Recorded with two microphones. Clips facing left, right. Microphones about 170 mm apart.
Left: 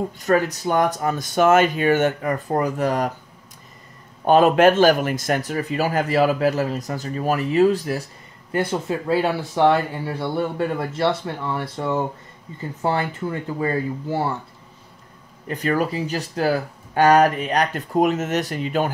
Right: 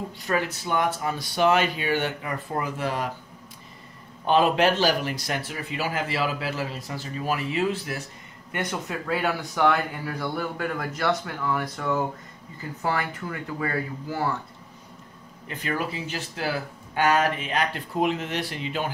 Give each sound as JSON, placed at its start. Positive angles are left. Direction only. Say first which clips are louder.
{"t": 0.2, "sound": "a man's voice", "louder": "left 7 dB", "side_deg": 45}
{"t": 4.2, "sound": "a man's voice", "louder": "left 6 dB", "side_deg": 45}
{"t": 15.4, "sound": "a man's voice", "louder": "left 7 dB", "side_deg": 40}